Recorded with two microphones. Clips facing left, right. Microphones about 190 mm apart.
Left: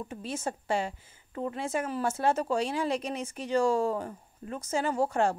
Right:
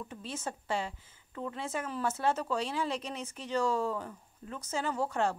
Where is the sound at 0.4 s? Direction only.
50° left (ahead or behind).